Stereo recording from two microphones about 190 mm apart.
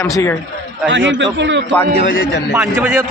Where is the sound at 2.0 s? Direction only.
55° left (ahead or behind).